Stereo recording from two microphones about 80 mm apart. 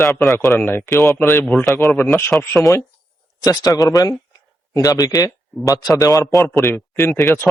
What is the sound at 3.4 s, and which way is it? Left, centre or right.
Speech, left.